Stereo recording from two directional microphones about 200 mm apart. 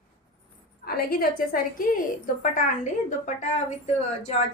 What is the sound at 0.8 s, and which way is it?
A woman's voice, 50° left (ahead or behind).